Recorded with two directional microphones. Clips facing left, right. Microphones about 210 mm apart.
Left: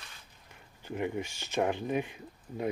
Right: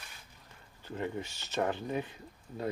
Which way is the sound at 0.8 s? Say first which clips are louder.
Left 3 dB; 15° left (ahead or behind).